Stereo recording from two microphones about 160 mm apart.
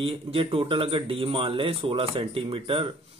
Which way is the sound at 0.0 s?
35° right (ahead or behind).